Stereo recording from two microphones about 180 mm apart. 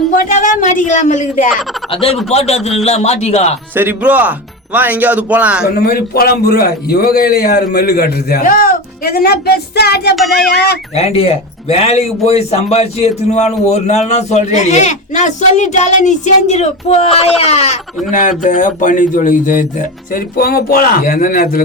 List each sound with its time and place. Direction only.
0.2 s speech: 45° left (ahead or behind)
1.9 s speech: 30° left (ahead or behind)
3.8 s speech: 10° right (ahead or behind)
5.6 s a man's voice: 55° left (ahead or behind)
10.9 s speech: 35° left (ahead or behind); by 21.6 s 55° left (ahead or behind)